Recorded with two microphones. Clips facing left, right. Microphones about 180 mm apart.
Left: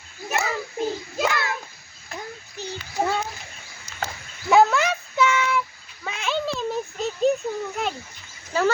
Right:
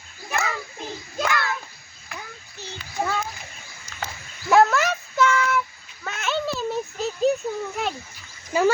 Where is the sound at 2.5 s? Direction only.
20° left (ahead or behind).